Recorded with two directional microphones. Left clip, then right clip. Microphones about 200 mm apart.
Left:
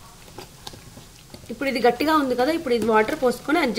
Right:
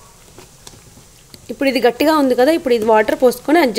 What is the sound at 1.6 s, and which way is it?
A woman's voice, 50° right (ahead or behind).